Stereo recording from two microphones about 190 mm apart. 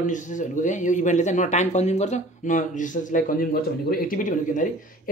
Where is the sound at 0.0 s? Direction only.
40° left (ahead or behind).